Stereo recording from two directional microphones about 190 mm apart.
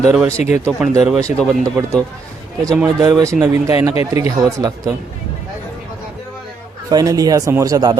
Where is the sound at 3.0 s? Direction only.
15° right (ahead or behind).